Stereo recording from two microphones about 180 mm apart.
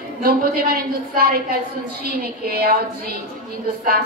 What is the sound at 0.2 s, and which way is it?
A woman's voice, 55° right (ahead or behind).